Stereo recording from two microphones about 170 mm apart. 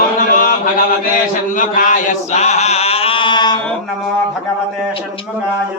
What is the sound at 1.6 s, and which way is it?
Chant, 50° left (ahead or behind).